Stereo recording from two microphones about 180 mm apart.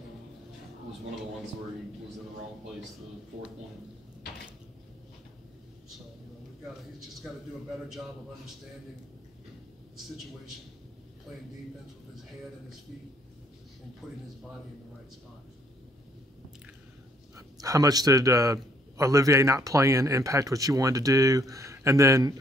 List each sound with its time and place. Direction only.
14.0 s speech: centre (ahead or behind)
17.4 s a man's voice: 20° right (ahead or behind)